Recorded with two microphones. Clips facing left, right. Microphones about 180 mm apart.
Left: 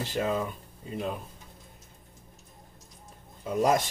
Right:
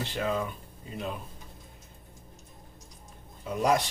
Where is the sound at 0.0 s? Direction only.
45° left (ahead or behind).